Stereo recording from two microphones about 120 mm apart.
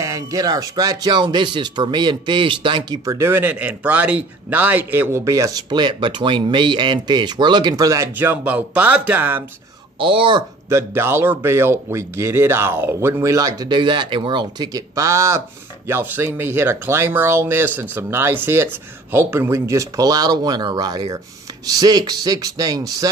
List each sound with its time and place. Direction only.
0.0 s speech: 30° right (ahead or behind)
3.1 s speech: 20° right (ahead or behind)
9.9 s speech: 45° right (ahead or behind)
10.7 s speech: 20° right (ahead or behind)